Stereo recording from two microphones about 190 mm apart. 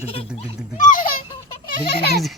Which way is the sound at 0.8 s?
45° left (ahead or behind).